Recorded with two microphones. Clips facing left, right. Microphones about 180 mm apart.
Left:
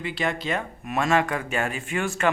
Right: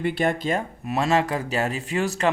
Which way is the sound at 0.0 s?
55° right (ahead or behind).